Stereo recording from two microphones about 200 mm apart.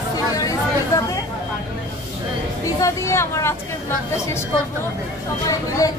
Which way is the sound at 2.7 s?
15° left (ahead or behind).